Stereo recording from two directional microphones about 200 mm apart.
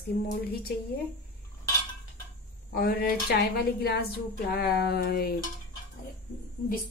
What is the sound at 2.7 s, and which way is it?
A woman's voice, 50° left (ahead or behind).